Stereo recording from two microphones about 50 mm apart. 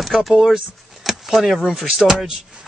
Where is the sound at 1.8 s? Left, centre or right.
Centre.